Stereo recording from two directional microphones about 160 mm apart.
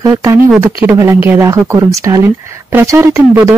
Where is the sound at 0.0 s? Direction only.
20° right (ahead or behind).